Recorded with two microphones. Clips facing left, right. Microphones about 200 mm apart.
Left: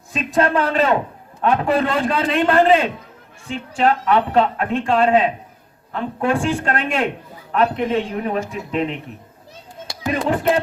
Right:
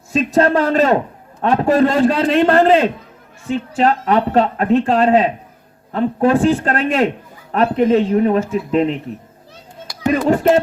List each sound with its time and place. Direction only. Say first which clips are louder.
0.1 s a man's voice: right 4 dB; 40° right (ahead or behind)
10.1 s speech: right 5 dB; 40° right (ahead or behind)